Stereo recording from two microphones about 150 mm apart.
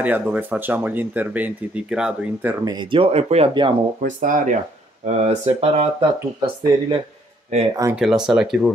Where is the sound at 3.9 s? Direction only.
60° right (ahead or behind).